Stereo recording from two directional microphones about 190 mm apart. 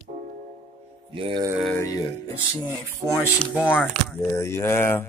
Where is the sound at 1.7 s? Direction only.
15° left (ahead or behind).